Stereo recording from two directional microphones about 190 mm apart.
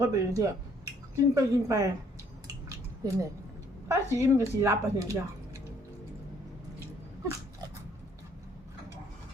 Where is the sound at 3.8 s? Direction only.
15° right (ahead or behind).